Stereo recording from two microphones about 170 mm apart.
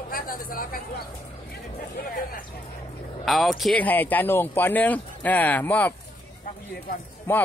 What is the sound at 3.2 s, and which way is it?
Speech, centre (ahead or behind).